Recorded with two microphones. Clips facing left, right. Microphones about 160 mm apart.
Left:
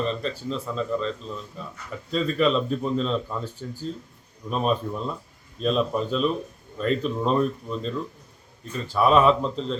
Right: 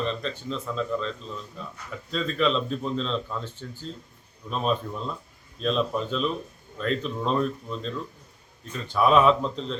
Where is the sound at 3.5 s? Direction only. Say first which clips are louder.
Left 4 dB; 40° left (ahead or behind).